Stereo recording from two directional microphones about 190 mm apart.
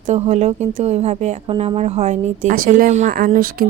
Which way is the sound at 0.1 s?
35° right (ahead or behind).